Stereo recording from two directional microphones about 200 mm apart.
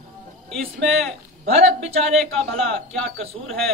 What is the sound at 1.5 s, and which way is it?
Speech, 30° right (ahead or behind).